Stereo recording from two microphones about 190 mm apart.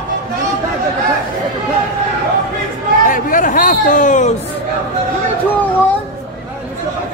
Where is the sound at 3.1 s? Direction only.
45° left (ahead or behind).